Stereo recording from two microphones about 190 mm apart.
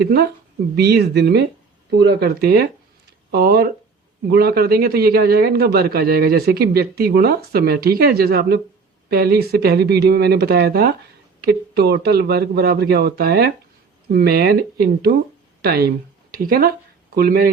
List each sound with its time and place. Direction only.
0.8 s a man's voice: 60° right (ahead or behind)
15.6 s a man's voice: 55° right (ahead or behind)